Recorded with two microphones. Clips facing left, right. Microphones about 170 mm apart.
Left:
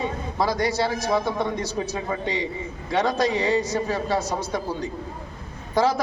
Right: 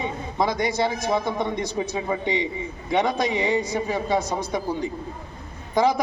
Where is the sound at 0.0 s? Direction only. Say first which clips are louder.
Even; 15° right (ahead or behind).